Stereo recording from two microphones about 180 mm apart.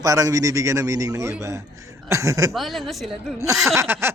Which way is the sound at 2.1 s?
15° right (ahead or behind).